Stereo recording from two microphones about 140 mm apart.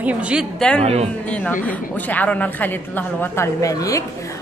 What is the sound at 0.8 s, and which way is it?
Speech, 50° right (ahead or behind).